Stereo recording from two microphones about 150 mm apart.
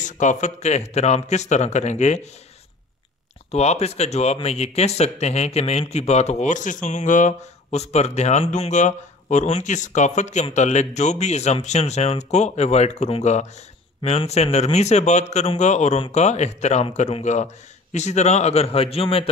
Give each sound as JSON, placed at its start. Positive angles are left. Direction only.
{"t": 0.0, "sound": "speech", "side_deg": 55}
{"t": 3.5, "sound": "speech", "side_deg": 45}